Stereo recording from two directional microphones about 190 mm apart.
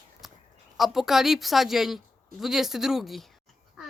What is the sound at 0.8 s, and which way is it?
A child's voice, centre (ahead or behind).